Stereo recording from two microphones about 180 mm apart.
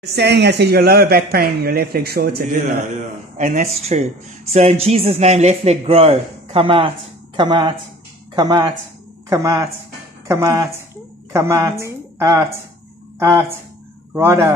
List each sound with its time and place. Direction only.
0.0 s speech: 65° right (ahead or behind); by 12.5 s 15° right (ahead or behind)
14.1 s speech: 15° right (ahead or behind)